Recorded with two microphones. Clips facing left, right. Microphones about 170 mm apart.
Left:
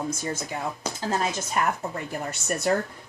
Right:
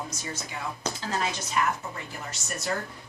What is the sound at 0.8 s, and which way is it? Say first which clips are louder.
Speech: even; 10° left (ahead or behind).